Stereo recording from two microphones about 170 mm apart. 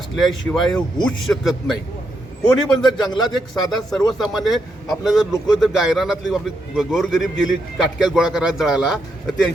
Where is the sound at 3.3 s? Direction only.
Centre (ahead or behind).